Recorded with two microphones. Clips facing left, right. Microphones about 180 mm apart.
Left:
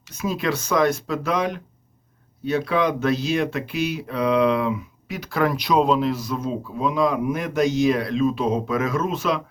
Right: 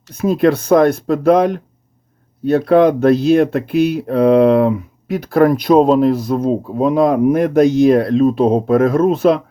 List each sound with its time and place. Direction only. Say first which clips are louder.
0.2 s speech: right 11 dB; 55° right (ahead or behind)